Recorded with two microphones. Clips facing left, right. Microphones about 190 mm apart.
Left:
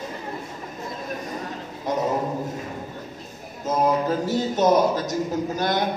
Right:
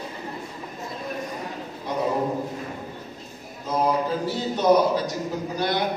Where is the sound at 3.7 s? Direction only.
45° left (ahead or behind).